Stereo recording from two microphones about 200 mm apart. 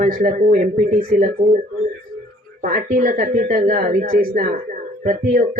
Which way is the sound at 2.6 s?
40° right (ahead or behind).